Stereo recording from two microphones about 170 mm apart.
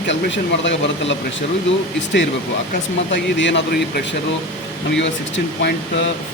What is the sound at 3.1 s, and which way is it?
Speech, 90° left.